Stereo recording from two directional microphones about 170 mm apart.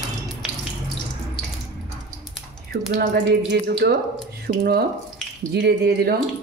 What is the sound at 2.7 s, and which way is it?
Speech, 65° right (ahead or behind).